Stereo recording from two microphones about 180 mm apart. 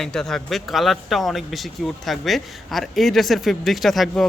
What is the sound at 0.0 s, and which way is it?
Speech, 5° left (ahead or behind).